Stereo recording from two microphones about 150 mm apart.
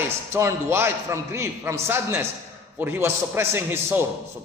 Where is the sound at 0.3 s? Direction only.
15° right (ahead or behind).